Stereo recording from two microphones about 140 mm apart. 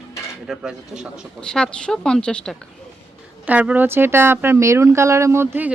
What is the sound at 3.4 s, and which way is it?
Speech, 10° right (ahead or behind).